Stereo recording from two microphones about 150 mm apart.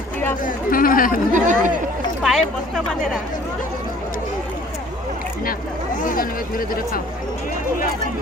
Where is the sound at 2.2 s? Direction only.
Centre (ahead or behind).